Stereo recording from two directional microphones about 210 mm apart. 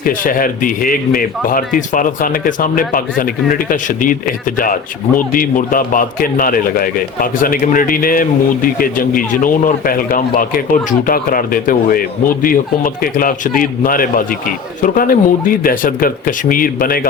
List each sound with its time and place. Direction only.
0.0 s speech: 40° left (ahead or behind)